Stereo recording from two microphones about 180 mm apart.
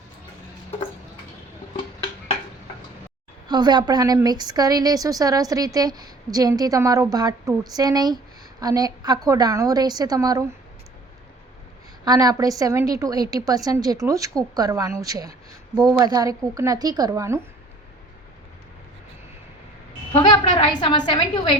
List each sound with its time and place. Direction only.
3.5 s a woman's voice: 25° right (ahead or behind)
12.0 s a woman's voice: 20° right (ahead or behind)
20.1 s a woman's voice: 25° left (ahead or behind)